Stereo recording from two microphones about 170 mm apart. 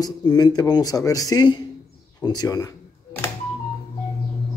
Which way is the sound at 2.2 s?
25° left (ahead or behind).